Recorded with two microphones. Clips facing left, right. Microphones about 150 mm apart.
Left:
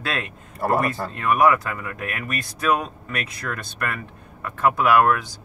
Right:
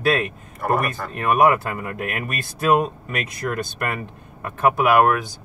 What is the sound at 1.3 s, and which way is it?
Speech, 20° right (ahead or behind).